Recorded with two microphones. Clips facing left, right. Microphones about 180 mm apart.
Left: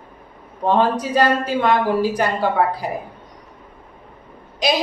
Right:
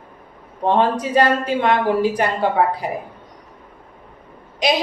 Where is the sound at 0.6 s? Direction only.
25° right (ahead or behind).